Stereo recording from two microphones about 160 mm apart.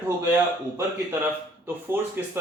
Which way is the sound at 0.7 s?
15° right (ahead or behind).